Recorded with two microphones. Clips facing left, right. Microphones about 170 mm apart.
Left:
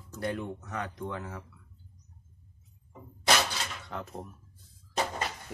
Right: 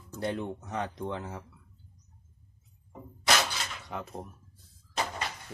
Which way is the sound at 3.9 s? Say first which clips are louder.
Right 1 dB; 10° right (ahead or behind).